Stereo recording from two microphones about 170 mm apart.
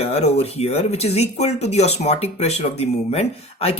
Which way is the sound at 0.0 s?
35° left (ahead or behind).